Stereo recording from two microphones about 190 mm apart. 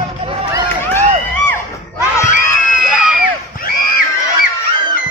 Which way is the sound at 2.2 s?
40° left (ahead or behind).